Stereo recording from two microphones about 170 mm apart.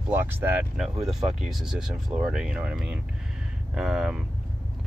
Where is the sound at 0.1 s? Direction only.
10° right (ahead or behind).